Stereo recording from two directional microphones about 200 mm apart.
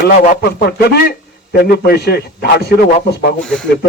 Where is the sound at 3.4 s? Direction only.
5° left (ahead or behind).